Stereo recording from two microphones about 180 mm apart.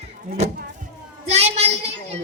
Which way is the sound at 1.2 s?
35° right (ahead or behind).